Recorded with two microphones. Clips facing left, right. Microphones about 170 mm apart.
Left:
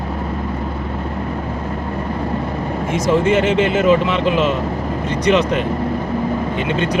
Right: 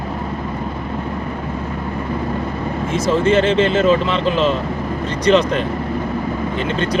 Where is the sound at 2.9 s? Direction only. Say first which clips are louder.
Even; 15° left (ahead or behind).